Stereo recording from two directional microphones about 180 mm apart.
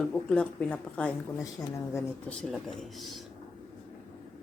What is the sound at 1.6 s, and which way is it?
Speech, 20° left (ahead or behind).